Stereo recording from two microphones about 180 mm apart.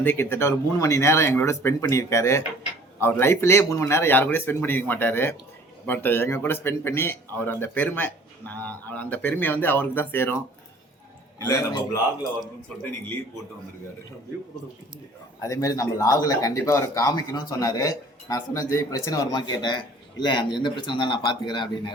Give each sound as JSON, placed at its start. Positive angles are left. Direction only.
{"t": 0.0, "sound": "speech", "side_deg": 10}
{"t": 11.3, "sound": "speech", "side_deg": 20}
{"t": 15.4, "sound": "speech", "side_deg": 20}